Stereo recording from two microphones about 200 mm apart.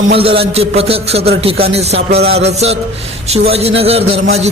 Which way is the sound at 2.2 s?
30° right (ahead or behind).